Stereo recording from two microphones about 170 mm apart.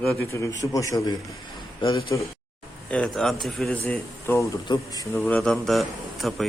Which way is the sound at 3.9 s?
15° left (ahead or behind).